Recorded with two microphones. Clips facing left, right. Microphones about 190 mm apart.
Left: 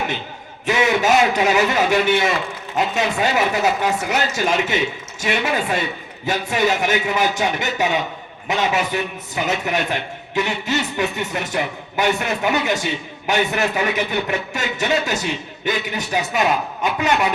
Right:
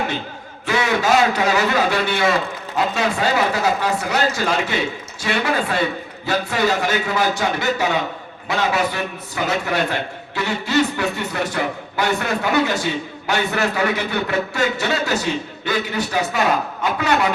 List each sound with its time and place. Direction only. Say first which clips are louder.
0.6 s a man's voice: left 2 dB; 20° left (ahead or behind)